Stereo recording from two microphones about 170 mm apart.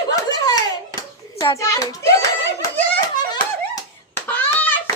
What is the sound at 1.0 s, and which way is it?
Hands, 25° left (ahead or behind).